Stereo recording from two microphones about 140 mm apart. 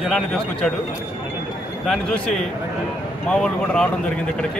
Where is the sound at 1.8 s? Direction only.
5° left (ahead or behind).